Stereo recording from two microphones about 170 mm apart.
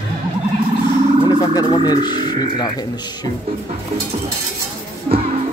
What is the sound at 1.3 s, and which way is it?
Speech, 25° left (ahead or behind).